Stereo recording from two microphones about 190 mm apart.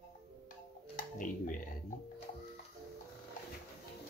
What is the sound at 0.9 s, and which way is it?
Music, 45° left (ahead or behind).